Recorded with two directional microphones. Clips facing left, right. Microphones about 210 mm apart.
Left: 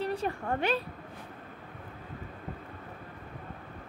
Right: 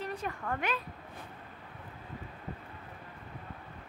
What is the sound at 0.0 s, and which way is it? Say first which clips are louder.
Speech: left 5 dB; 30° left (ahead or behind).